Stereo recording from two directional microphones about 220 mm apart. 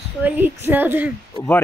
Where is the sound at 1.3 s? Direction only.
10° left (ahead or behind).